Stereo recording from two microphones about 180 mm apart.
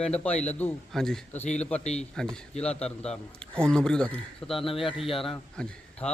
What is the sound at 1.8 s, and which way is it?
Speech, 35° left (ahead or behind).